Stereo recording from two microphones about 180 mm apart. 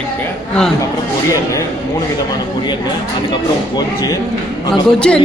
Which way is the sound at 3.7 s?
20° left (ahead or behind).